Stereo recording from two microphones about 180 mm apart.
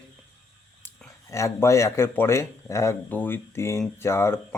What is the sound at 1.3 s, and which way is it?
A man's voice, 15° left (ahead or behind).